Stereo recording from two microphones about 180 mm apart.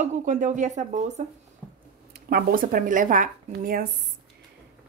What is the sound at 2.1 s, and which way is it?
Speech, 60° right (ahead or behind).